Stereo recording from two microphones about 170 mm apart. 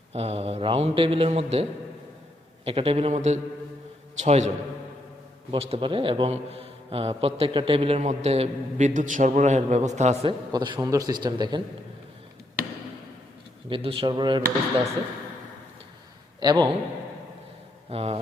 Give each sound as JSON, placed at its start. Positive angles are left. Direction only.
{"t": 0.1, "sound": "a man's voice", "side_deg": -35}
{"t": 2.6, "sound": "a man's voice", "side_deg": -35}
{"t": 10.5, "sound": "a man's voice", "side_deg": -25}
{"t": 13.7, "sound": "a man's voice", "side_deg": -30}
{"t": 16.4, "sound": "a man's voice", "side_deg": -25}
{"t": 17.8, "sound": "a man's voice", "side_deg": -35}